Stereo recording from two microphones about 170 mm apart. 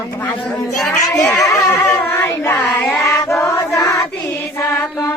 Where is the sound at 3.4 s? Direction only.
15° left (ahead or behind).